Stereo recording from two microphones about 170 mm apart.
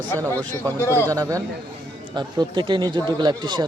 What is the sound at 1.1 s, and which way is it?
Speech, 20° right (ahead or behind).